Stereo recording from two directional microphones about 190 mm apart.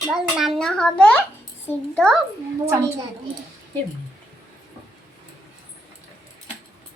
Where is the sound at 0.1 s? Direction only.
Centre (ahead or behind).